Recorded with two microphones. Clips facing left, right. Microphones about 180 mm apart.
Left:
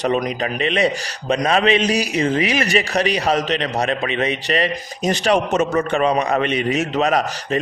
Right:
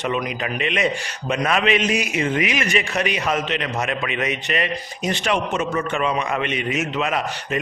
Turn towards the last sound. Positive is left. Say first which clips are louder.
# left 5 dB
turn(degrees=40)  # may be behind; listen again after turning